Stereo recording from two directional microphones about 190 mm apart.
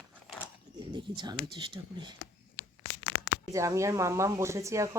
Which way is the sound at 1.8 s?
20° right (ahead or behind).